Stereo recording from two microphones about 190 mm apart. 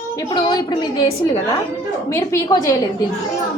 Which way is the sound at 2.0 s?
15° left (ahead or behind).